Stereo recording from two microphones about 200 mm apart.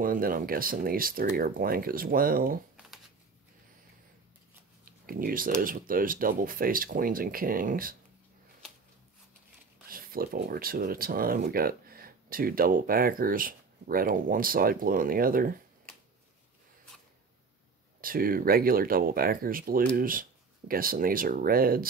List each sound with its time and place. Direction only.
0.0 s speech: 45° right (ahead or behind)
4.8 s speech: 45° right (ahead or behind)
9.8 s speech: 45° right (ahead or behind)
18.0 s speech: 45° right (ahead or behind)